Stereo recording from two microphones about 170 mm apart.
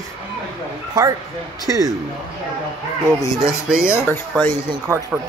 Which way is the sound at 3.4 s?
5° right (ahead or behind).